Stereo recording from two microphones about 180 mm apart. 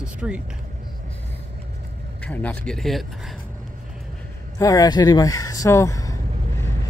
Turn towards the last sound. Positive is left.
turn(degrees=20)  # may be behind; listen again after turning